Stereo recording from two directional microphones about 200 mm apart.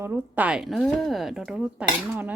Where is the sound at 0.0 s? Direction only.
10° right (ahead or behind).